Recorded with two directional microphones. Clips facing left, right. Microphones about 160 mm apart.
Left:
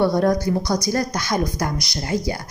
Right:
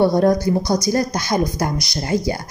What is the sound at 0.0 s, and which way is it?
A woman's voice, 30° right (ahead or behind).